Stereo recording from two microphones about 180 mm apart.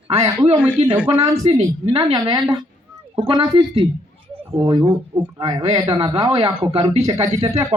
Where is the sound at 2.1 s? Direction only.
20° right (ahead or behind).